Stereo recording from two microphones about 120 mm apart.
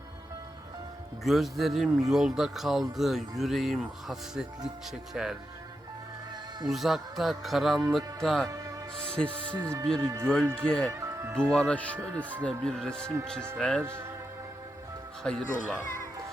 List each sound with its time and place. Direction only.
1.2 s speech: centre (ahead or behind)
6.7 s speech: centre (ahead or behind)
10.9 s music: 25° right (ahead or behind)
11.3 s speech: 5° left (ahead or behind)
13.8 s speech: 20° right (ahead or behind)
15.2 s speech: 5° left (ahead or behind)